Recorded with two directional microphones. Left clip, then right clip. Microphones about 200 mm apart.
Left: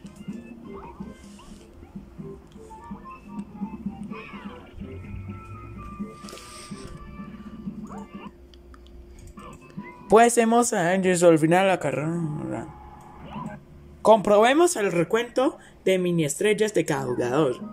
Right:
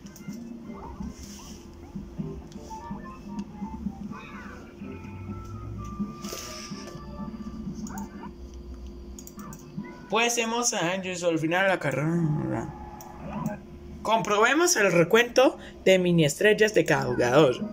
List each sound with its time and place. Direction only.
4.1 s music: 10° left (ahead or behind)
10.0 s a man's voice: 40° left (ahead or behind)
11.4 s speech: 15° left (ahead or behind)
13.2 s a sound: centre (ahead or behind)
14.0 s speech: 25° left (ahead or behind); by 17.6 s 5° left (ahead or behind)